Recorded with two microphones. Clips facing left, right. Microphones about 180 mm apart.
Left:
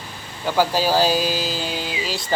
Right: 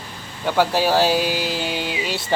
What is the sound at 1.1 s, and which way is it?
Music, 65° right (ahead or behind).